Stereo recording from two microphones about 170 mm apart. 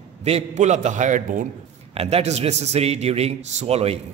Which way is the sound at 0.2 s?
40° right (ahead or behind).